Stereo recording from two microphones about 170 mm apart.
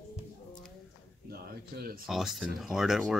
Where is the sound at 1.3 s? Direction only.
65° right (ahead or behind).